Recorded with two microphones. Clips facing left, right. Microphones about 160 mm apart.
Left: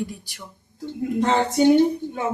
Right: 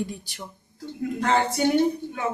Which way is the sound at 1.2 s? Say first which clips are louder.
Left 4 dB; 20° left (ahead or behind).